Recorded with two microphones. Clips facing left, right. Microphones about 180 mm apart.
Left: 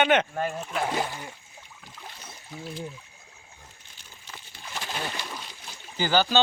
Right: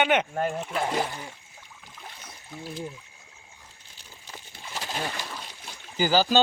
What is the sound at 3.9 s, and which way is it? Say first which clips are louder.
Crumpling: right 2 dB; 35° right (ahead or behind).